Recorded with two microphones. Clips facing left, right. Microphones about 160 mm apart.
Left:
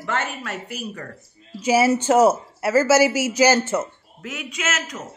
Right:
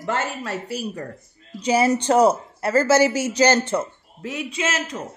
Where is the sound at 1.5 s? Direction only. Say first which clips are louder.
Left 1 dB; 5° left (ahead or behind).